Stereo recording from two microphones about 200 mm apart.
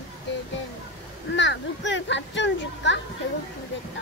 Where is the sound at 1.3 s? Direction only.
65° left (ahead or behind).